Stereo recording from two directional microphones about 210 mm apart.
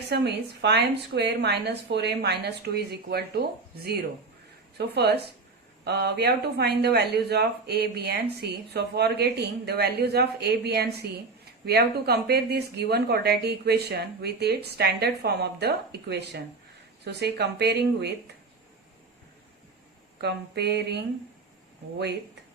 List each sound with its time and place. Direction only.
0.1 s speech: 55° right (ahead or behind)
4.9 s speech: 50° right (ahead or behind)
20.2 s speech: 50° right (ahead or behind)